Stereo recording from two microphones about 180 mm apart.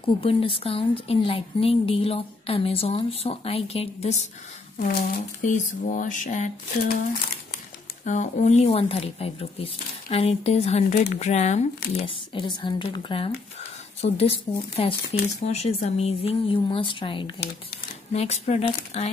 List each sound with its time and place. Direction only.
0.2 s speech: 30° left (ahead or behind)
4.8 s speech: 50° left (ahead or behind)
8.0 s speech: 40° left (ahead or behind)
12.4 s speech: 25° left (ahead or behind)